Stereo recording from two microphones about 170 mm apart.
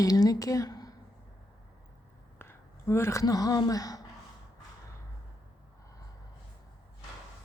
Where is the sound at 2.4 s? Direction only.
15° left (ahead or behind).